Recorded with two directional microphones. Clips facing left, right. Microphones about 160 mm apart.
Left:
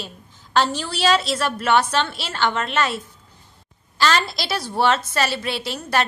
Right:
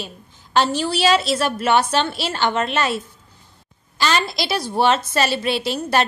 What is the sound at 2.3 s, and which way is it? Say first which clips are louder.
Speech: right 2 dB; 25° right (ahead or behind).